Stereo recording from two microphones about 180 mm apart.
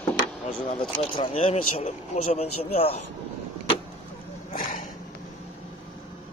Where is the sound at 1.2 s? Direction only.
30° left (ahead or behind).